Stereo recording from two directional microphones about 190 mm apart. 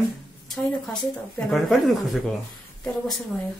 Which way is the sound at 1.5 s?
Centre (ahead or behind).